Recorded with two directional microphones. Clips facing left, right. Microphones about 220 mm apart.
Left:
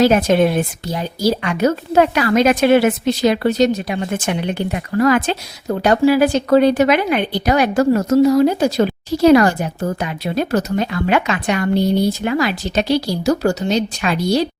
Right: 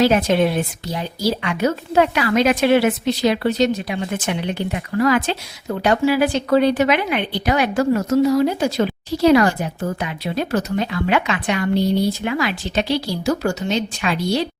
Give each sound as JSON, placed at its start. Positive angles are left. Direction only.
{"t": 0.0, "sound": "a woman's voice", "side_deg": 45}